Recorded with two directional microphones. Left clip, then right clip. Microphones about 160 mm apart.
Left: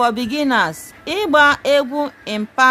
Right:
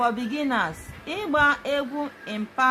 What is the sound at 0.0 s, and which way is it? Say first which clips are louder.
Speech: left 7 dB; 90° left.